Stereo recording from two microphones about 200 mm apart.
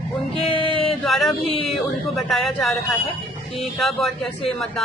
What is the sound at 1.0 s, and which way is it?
A man's voice, centre (ahead or behind).